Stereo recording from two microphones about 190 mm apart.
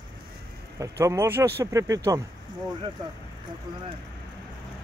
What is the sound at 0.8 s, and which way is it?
Speech, 15° right (ahead or behind).